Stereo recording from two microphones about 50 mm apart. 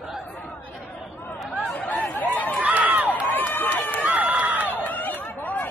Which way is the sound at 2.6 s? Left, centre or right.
Right.